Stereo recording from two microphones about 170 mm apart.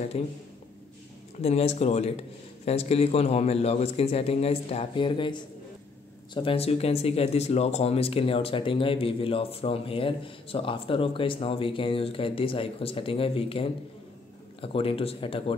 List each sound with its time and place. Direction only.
0.1 s speech: 35° left (ahead or behind)
1.4 s speech: 35° left (ahead or behind)